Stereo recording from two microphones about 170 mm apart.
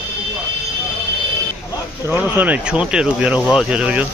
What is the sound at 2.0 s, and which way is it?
Speech, 10° right (ahead or behind).